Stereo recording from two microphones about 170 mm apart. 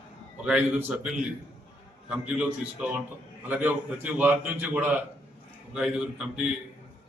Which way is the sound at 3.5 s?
10° right (ahead or behind).